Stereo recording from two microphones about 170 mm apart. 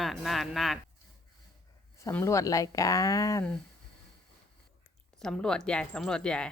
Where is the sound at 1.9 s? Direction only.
20° left (ahead or behind).